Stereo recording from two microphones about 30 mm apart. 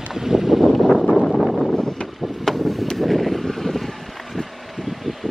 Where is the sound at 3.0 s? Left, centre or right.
Centre.